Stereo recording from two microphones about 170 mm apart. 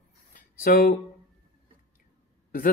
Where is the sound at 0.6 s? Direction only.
60° left (ahead or behind).